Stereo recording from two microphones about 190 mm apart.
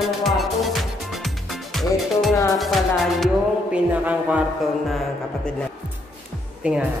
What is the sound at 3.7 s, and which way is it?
Speech, 5° right (ahead or behind).